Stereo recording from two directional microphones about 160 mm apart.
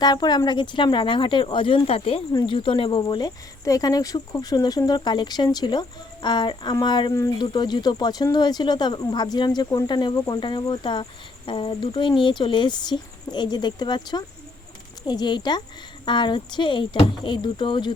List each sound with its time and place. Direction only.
0.0 s speech: 25° left (ahead or behind)